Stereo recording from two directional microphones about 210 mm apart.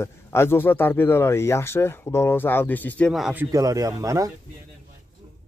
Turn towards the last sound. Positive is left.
turn(degrees=-15)  # may be behind; listen again after turning